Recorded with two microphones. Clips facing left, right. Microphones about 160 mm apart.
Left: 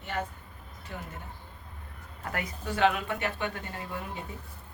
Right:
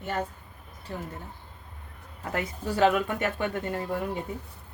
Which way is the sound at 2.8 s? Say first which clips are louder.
Right 3 dB; 45° right (ahead or behind).